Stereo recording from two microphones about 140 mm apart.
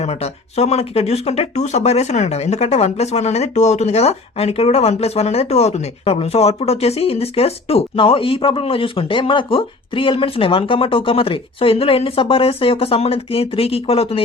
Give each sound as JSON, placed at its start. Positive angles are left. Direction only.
{"t": 0.0, "sound": "speech", "side_deg": 50}